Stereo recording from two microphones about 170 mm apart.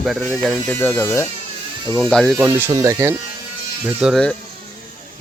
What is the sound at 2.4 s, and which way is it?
Speech, 15° right (ahead or behind).